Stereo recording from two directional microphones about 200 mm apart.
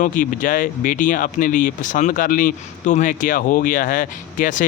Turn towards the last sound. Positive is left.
turn(degrees=40)  # may be behind; listen again after turning